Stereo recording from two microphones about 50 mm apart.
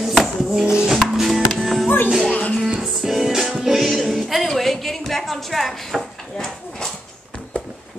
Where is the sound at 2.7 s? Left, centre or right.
Centre.